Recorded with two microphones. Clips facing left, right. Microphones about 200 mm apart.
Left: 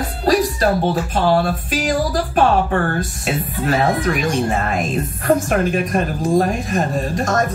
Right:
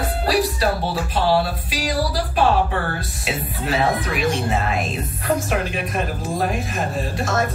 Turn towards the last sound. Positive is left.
turn(degrees=40)  # may be behind; listen again after turning